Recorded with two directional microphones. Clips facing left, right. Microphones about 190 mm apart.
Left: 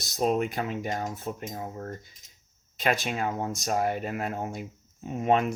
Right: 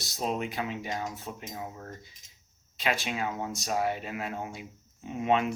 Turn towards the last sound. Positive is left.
turn(degrees=45)  # may be behind; listen again after turning